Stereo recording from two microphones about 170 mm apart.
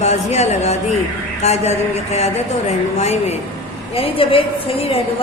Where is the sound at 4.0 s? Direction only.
30° left (ahead or behind).